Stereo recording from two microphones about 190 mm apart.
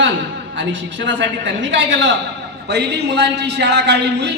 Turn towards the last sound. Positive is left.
turn(degrees=-60)  # may be behind; listen again after turning